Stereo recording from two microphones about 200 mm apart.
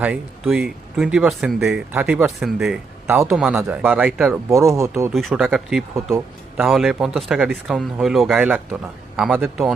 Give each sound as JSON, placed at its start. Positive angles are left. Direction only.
{"t": 0.0, "sound": "speech", "side_deg": -5}
{"t": 4.4, "sound": "speech", "side_deg": -15}
{"t": 5.1, "sound": "speech", "side_deg": 0}